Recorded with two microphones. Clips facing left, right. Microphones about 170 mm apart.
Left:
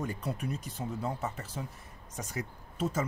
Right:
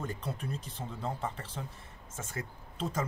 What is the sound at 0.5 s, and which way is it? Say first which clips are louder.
Speech: left 2 dB; 30° right (ahead or behind).